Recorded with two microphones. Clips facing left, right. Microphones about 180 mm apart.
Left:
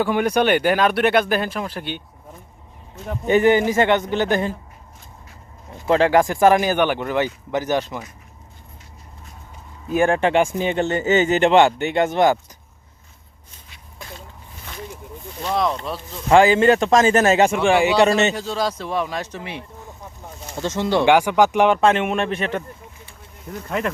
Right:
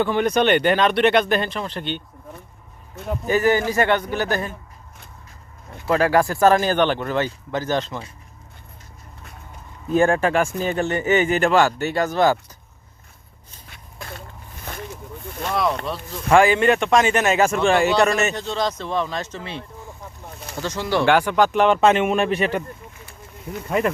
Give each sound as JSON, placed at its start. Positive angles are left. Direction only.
{"t": 0.0, "sound": "speech", "side_deg": 10}
{"t": 3.2, "sound": "speech", "side_deg": 20}
{"t": 5.8, "sound": "speech", "side_deg": 20}
{"t": 9.9, "sound": "speech", "side_deg": 15}
{"t": 13.7, "sound": "a sound", "side_deg": -55}
{"t": 16.3, "sound": "speech", "side_deg": 25}
{"t": 17.5, "sound": "speech", "side_deg": 10}
{"t": 18.0, "sound": "speech", "side_deg": 20}
{"t": 18.3, "sound": "speech", "side_deg": 5}
{"t": 21.8, "sound": "speech", "side_deg": -5}